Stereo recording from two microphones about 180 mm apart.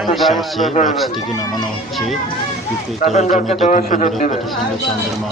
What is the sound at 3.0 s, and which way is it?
A man's voice, 40° left (ahead or behind).